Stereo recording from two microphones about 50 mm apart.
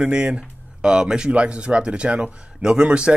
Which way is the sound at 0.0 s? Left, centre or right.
Centre.